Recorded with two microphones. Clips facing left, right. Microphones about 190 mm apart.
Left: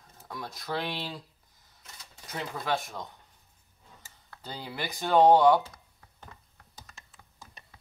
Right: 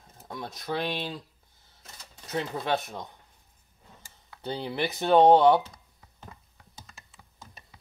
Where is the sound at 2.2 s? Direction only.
25° right (ahead or behind).